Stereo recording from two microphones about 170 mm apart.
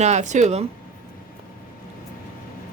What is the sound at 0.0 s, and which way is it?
Speech, 45° right (ahead or behind).